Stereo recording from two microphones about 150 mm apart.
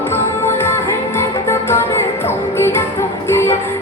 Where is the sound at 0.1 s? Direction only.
15° left (ahead or behind).